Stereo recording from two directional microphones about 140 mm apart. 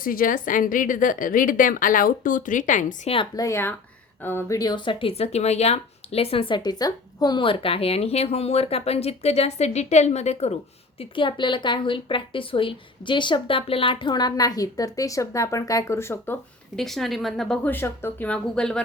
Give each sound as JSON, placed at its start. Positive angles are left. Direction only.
{"t": 0.0, "sound": "a woman's voice", "side_deg": 90}
{"t": 3.3, "sound": "speech", "side_deg": 20}
{"t": 11.1, "sound": "a woman's voice", "side_deg": 35}
{"t": 16.7, "sound": "speech", "side_deg": 0}